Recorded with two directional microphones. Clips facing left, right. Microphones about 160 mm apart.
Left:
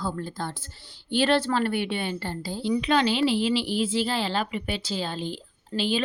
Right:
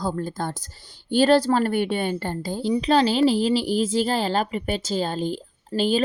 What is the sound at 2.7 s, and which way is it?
Speech, 35° right (ahead or behind).